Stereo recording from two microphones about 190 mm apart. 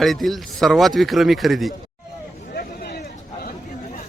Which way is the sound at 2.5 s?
50° left (ahead or behind).